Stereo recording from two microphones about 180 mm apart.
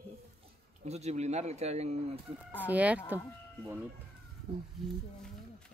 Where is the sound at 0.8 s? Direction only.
35° right (ahead or behind).